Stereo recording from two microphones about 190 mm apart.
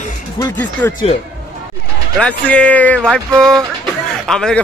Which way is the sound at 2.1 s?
5° left (ahead or behind).